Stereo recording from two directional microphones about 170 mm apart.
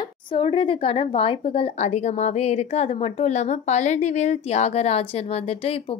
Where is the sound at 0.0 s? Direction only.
30° left (ahead or behind).